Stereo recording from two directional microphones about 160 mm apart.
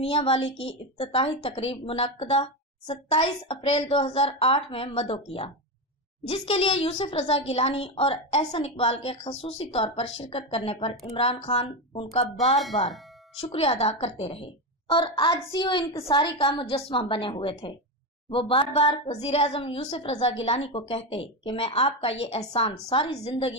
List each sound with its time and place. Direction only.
0.0 s a woman's voice: 35° left (ahead or behind)
12.4 s speech: centre (ahead or behind)
13.4 s a woman's voice: 35° left (ahead or behind)